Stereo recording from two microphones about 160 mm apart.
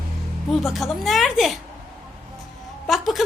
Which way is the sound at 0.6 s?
Centre (ahead or behind).